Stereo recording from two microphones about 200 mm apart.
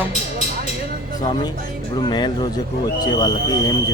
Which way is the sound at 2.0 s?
20° left (ahead or behind).